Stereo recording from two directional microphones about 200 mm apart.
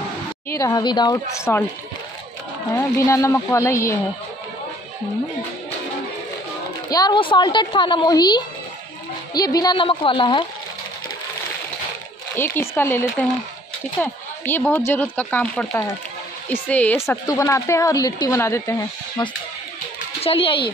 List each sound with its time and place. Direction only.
0.5 s speech: 15° left (ahead or behind)
2.7 s speech: 15° left (ahead or behind)
6.9 s speech: 20° left (ahead or behind)
12.4 s speech: 10° left (ahead or behind); by 20.5 s 30° left (ahead or behind)